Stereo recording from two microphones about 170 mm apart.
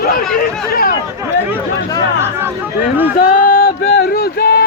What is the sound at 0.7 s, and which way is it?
Speech, 60° left (ahead or behind).